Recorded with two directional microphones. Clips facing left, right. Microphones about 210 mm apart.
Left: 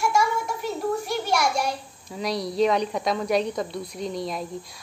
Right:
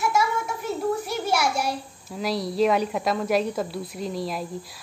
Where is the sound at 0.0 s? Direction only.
5° right (ahead or behind).